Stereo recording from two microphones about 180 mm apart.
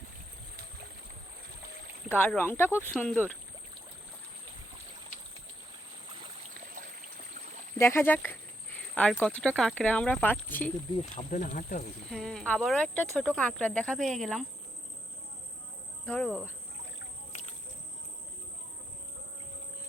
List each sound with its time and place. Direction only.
2.1 s speech: 10° left (ahead or behind)
7.8 s speech: 15° left (ahead or behind)
10.9 s speech: 35° left (ahead or behind)
12.1 s speech: centre (ahead or behind)
16.0 s speech: 10° left (ahead or behind)